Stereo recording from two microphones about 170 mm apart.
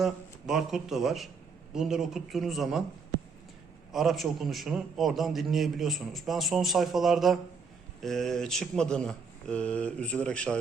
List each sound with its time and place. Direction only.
0.0 s a man's voice: centre (ahead or behind)
3.9 s a man's voice: centre (ahead or behind)